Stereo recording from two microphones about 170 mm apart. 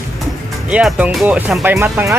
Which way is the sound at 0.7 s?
5° right (ahead or behind).